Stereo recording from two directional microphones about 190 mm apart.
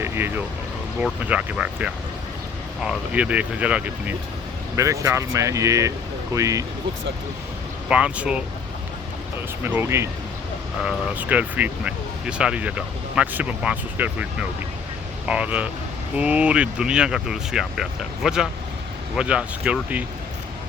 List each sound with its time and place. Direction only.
0.0 s a sound: 10° right (ahead or behind)
0.9 s speech: 5° right (ahead or behind)
7.9 s speech: 5° right (ahead or behind)
9.6 s speech: 10° right (ahead or behind)
15.3 s speech: 5° right (ahead or behind)